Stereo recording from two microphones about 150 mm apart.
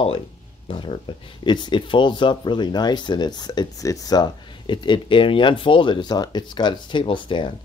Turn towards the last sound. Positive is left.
turn(degrees=35)  # may be behind; listen again after turning